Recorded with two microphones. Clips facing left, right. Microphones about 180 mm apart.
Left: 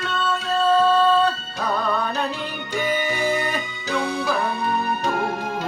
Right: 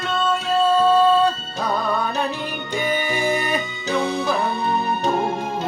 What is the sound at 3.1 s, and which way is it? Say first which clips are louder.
Music: right 1 dB; 15° right (ahead or behind).